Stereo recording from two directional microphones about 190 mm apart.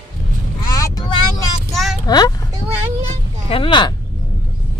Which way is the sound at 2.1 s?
20° left (ahead or behind).